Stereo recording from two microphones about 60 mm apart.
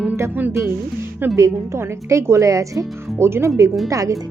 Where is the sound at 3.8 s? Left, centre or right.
Right.